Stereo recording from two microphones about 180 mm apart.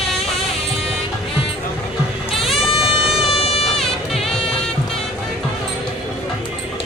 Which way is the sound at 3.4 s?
35° left (ahead or behind).